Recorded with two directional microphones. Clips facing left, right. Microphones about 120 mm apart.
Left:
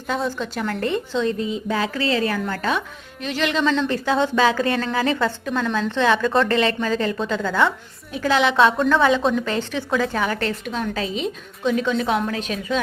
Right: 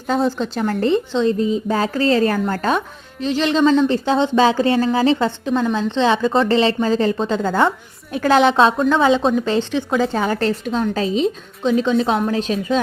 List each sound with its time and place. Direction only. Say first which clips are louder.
0.3 s a woman's voice: right 5 dB; 30° right (ahead or behind)
3.2 s a woman's voice: right 5 dB; 30° right (ahead or behind)
8.1 s a woman's voice: right 5 dB; 50° right (ahead or behind)
8.9 s a woman's voice: right 2 dB; 20° right (ahead or behind)